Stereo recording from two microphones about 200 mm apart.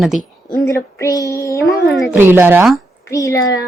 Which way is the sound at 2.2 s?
10° right (ahead or behind).